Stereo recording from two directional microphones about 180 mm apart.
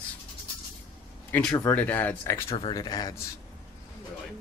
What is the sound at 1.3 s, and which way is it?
Speech, 5° left (ahead or behind).